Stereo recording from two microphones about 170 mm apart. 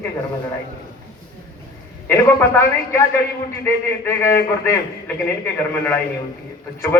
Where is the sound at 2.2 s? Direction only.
15° left (ahead or behind).